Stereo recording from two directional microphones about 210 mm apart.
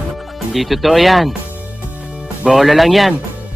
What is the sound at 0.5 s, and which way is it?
Speech, centre (ahead or behind).